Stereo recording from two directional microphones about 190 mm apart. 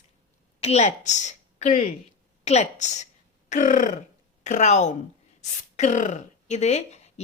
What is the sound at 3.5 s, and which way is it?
Burping, 45° left (ahead or behind).